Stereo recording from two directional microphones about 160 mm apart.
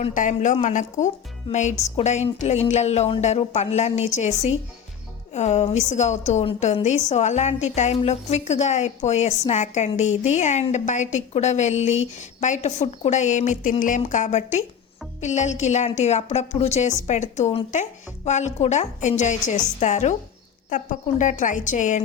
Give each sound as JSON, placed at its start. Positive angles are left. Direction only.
{"t": 0.0, "sound": "a woman's voice", "side_deg": 50}
{"t": 1.5, "sound": "a woman's voice", "side_deg": 35}
{"t": 5.3, "sound": "a woman's voice", "side_deg": 45}